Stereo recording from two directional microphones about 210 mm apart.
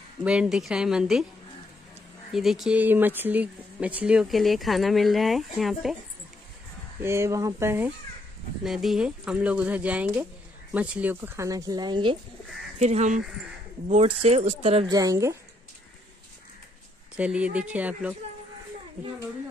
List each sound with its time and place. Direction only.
0.2 s speech: 5° right (ahead or behind)
2.3 s speech: centre (ahead or behind)
7.0 s speech: 10° right (ahead or behind)
12.7 s speech: 35° right (ahead or behind)
15.0 s speech: 15° right (ahead or behind)
17.2 s speech: 5° right (ahead or behind)